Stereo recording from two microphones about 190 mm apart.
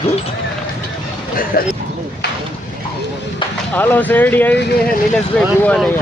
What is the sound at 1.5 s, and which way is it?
Speech, 50° left (ahead or behind).